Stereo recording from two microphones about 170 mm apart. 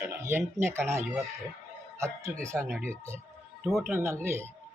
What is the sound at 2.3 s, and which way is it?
Speech, 20° right (ahead or behind).